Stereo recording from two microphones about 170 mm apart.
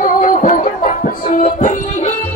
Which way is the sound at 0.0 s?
50° left (ahead or behind).